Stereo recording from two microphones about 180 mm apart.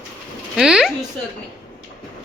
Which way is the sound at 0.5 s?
5° right (ahead or behind).